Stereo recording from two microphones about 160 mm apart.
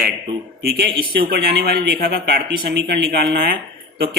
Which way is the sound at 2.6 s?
90° right.